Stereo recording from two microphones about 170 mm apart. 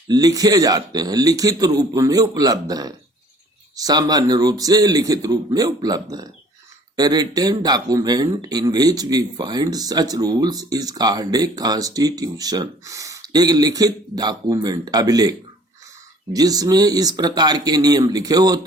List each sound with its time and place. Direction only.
0.1 s a man's voice: 20° right (ahead or behind)